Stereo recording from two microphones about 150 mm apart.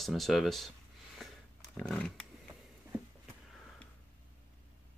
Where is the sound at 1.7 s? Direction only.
5° left (ahead or behind).